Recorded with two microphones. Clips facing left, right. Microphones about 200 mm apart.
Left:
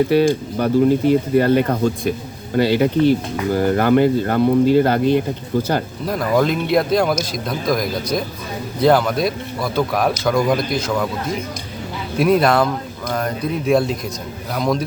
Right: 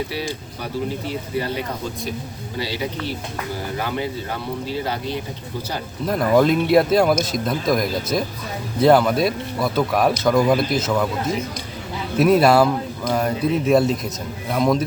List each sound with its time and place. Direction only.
0.1 s speech: 50° left (ahead or behind)
6.1 s speech: centre (ahead or behind)